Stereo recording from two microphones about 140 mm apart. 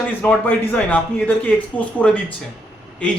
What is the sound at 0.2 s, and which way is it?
Speech, 15° left (ahead or behind).